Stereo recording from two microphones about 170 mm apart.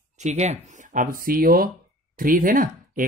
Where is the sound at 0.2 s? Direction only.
40° right (ahead or behind).